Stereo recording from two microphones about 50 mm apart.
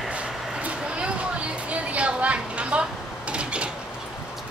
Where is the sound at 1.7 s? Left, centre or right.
Right.